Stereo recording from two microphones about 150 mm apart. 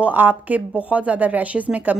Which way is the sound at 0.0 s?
10° right (ahead or behind).